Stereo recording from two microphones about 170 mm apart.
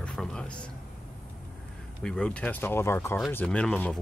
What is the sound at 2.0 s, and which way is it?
Speech, 5° left (ahead or behind).